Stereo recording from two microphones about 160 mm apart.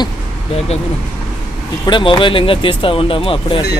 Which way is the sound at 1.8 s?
30° left (ahead or behind).